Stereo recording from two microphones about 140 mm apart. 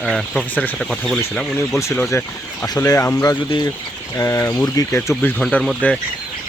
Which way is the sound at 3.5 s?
30° left (ahead or behind).